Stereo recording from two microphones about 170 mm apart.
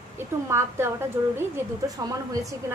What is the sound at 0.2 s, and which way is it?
A woman's voice, 15° right (ahead or behind).